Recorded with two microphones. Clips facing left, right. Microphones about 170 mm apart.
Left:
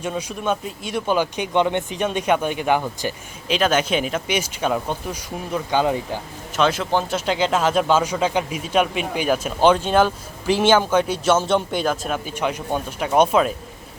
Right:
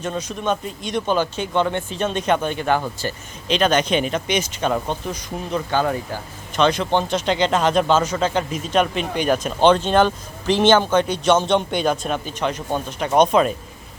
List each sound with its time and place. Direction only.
0.0 s speech: 10° left (ahead or behind)
6.6 s speech: 5° left (ahead or behind)